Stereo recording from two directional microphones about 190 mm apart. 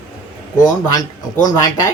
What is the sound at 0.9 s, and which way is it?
Speech, 20° left (ahead or behind).